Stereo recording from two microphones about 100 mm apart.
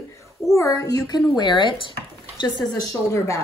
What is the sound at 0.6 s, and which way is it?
A woman's voice, 30° left (ahead or behind).